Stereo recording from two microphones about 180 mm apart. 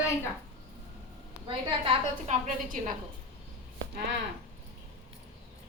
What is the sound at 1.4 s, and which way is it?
Speech, 30° right (ahead or behind).